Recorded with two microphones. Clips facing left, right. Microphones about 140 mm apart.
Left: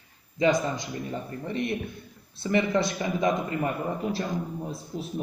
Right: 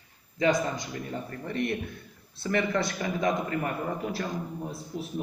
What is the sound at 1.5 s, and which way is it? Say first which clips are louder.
A man's voice: even; 20° left (ahead or behind).